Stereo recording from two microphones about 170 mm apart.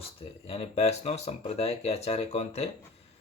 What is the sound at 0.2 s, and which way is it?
Speech, 35° left (ahead or behind).